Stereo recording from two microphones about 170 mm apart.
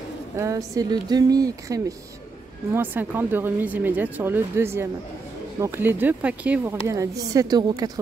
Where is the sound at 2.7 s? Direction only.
10° right (ahead or behind).